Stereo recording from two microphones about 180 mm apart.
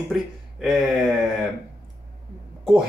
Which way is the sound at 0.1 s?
Centre (ahead or behind).